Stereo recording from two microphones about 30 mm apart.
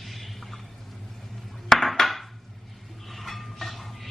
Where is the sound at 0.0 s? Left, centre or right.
Centre.